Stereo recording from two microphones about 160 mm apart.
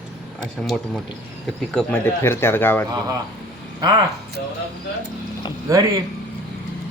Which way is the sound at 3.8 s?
30° right (ahead or behind).